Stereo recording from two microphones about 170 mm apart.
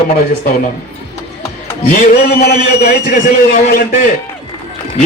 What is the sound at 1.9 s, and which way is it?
A man's voice, 60° left (ahead or behind).